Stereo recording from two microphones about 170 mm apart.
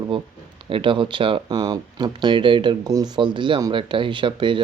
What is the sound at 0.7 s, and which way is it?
Speech, 30° right (ahead or behind).